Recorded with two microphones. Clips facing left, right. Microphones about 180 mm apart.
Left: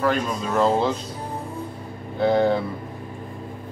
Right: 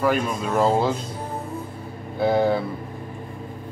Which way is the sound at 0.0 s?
10° right (ahead or behind).